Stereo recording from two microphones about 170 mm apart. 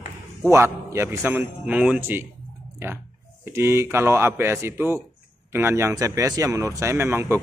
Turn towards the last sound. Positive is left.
turn(degrees=-15)  # may be behind; listen again after turning